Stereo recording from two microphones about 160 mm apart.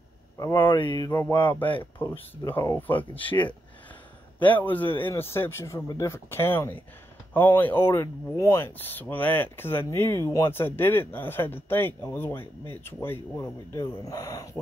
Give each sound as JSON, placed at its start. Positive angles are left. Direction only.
{"t": 0.4, "sound": "speech", "side_deg": 25}
{"t": 1.1, "sound": "speech", "side_deg": 10}
{"t": 4.4, "sound": "speech", "side_deg": 10}